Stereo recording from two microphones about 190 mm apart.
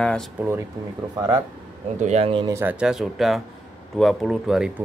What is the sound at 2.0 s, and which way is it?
Speech, 35° right (ahead or behind).